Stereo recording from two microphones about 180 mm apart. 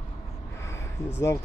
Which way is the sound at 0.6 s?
15° left (ahead or behind).